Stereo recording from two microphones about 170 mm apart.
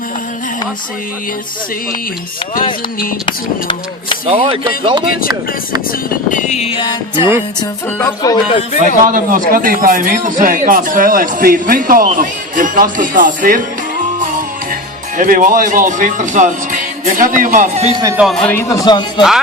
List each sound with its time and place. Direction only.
3.2 s speech: 30° left (ahead or behind)
4.3 s speech: 35° right (ahead or behind)
6.3 s music: 45° left (ahead or behind)
7.9 s speech: 20° left (ahead or behind)
8.8 s speech: 50° right (ahead or behind)
15.2 s speech: 50° right (ahead or behind)
18.2 s speech: 5° left (ahead or behind)
18.7 s speech: 20° left (ahead or behind)